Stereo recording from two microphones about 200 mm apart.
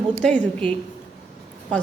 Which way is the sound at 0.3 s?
5° left (ahead or behind).